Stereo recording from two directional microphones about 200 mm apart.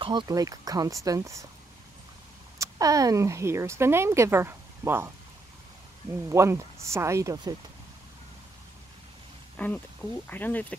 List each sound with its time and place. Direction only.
0.0 s speech: 25° right (ahead or behind)
2.6 s speech: 15° right (ahead or behind)
6.2 s speech: 15° right (ahead or behind)
9.6 s speech: 10° left (ahead or behind)